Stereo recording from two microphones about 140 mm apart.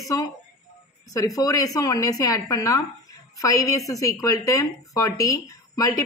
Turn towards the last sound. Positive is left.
turn(degrees=25)  # may be behind; listen again after turning